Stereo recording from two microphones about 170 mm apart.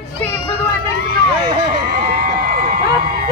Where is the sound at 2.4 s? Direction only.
60° right (ahead or behind).